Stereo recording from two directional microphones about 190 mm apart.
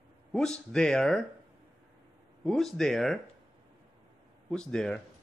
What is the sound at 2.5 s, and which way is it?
Speech, centre (ahead or behind).